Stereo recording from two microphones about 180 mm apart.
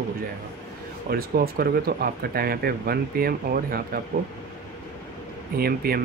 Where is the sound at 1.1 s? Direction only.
60° right (ahead or behind).